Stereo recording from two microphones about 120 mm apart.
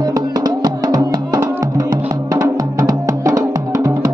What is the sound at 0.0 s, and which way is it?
Music, 30° right (ahead or behind).